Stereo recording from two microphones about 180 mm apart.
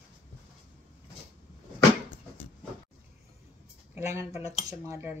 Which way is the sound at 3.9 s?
15° right (ahead or behind).